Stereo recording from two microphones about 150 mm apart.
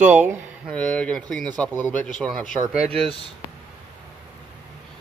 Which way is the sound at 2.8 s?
40° right (ahead or behind).